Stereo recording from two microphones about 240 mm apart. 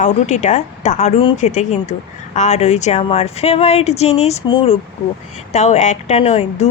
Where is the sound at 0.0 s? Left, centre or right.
Left.